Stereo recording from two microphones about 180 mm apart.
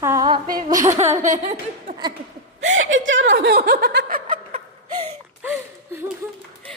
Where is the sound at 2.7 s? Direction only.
90° right; by 4.6 s 45° right (ahead or behind).